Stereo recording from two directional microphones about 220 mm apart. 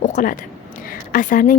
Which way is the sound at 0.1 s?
40° left (ahead or behind).